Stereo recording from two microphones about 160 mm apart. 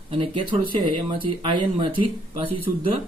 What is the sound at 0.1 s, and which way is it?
Speech, 30° right (ahead or behind).